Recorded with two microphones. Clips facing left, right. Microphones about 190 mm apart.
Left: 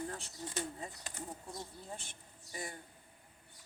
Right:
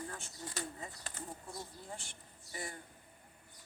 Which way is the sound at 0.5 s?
20° left (ahead or behind).